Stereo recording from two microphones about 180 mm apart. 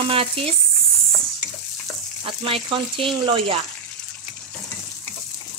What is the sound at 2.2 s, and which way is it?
Frying, 30° right (ahead or behind).